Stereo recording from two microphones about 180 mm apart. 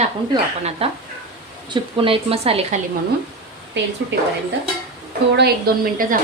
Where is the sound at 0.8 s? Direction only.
35° right (ahead or behind).